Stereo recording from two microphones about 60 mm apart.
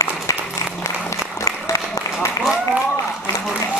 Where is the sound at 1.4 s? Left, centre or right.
Left.